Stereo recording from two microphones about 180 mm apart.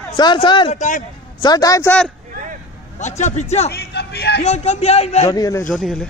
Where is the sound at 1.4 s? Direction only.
20° left (ahead or behind).